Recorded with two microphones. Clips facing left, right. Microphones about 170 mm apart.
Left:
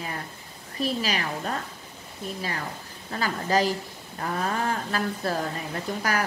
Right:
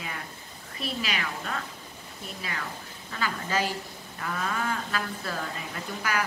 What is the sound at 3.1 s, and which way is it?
A woman's voice, 40° left (ahead or behind).